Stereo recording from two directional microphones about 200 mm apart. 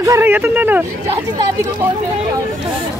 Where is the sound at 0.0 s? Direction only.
15° right (ahead or behind).